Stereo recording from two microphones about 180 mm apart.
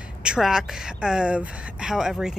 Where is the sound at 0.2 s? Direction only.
5° right (ahead or behind).